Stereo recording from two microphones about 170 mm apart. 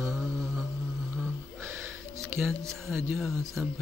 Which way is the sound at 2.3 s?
15° right (ahead or behind).